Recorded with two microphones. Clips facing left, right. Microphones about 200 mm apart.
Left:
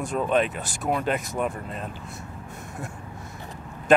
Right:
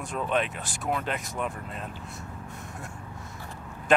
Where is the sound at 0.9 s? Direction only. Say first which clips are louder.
Left 5 dB; 10° left (ahead or behind).